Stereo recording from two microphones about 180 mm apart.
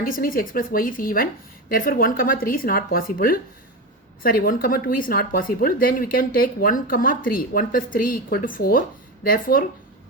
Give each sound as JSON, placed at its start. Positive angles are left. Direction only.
{"t": 0.0, "sound": "speech", "side_deg": 50}